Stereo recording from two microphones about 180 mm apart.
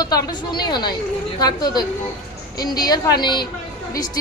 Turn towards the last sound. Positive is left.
turn(degrees=25)  # may be behind; listen again after turning